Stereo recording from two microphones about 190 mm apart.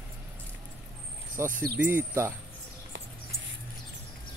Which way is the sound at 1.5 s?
55° right (ahead or behind).